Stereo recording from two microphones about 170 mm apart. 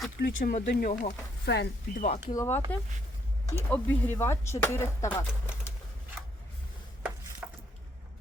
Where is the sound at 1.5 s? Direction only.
90° left.